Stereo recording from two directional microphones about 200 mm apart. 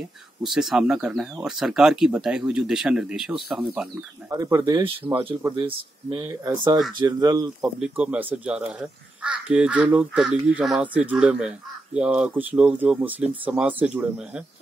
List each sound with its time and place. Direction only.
0.4 s speech: centre (ahead or behind)
4.3 s speech: 15° right (ahead or behind)
7.8 s speech: 5° right (ahead or behind)